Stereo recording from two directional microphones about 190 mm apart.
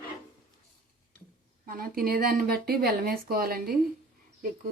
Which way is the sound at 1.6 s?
50° right (ahead or behind).